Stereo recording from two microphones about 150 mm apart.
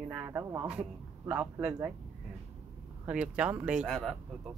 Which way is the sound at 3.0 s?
5° right (ahead or behind).